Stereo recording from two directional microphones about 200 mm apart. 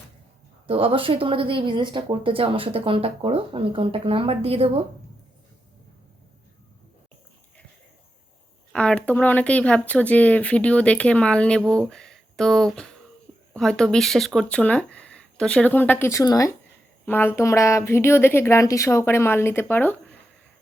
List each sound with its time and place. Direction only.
0.7 s speech: 25° right (ahead or behind)
8.7 s a woman's voice: 5° left (ahead or behind)